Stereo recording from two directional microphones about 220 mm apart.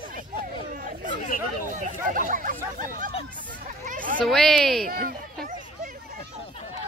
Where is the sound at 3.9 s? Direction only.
40° right (ahead or behind).